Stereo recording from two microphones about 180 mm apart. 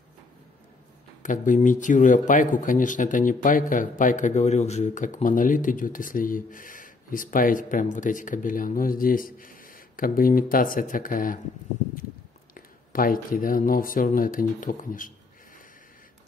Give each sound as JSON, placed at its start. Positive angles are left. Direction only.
{"t": 1.2, "sound": "speech", "side_deg": 45}
{"t": 12.5, "sound": "speech", "side_deg": 50}